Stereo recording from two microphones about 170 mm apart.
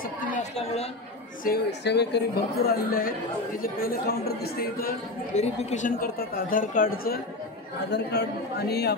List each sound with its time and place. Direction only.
0.4 s a woman's voice: 40° left (ahead or behind)
1.4 s a woman's voice: 70° left (ahead or behind)
5.3 s a woman's voice: 40° left (ahead or behind); by 7.2 s 55° left (ahead or behind)
7.9 s a man's voice: 75° left (ahead or behind)